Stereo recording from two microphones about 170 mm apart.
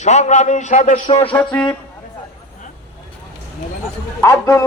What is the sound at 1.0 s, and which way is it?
Music, 35° left (ahead or behind).